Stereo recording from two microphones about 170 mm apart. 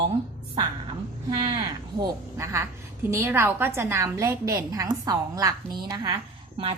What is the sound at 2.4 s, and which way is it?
A woman's voice, 15° right (ahead or behind).